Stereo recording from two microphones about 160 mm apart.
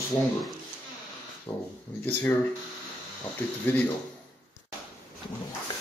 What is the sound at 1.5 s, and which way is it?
Speech, 15° left (ahead or behind).